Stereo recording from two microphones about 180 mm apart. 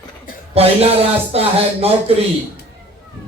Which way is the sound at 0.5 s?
35° right (ahead or behind).